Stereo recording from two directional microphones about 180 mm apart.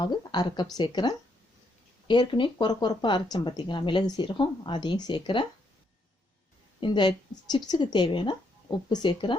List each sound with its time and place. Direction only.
0.0 s speech: 25° left (ahead or behind)
6.7 s speech: 25° left (ahead or behind)